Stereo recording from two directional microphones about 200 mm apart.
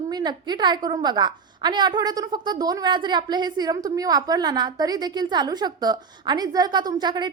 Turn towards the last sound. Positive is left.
turn(degrees=-20)  # may be behind; listen again after turning